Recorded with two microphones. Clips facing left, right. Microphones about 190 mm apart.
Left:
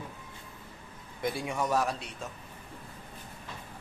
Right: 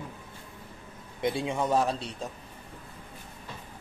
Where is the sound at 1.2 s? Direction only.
25° right (ahead or behind).